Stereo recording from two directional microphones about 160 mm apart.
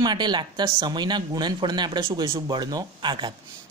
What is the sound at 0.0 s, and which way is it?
Speech, 25° right (ahead or behind).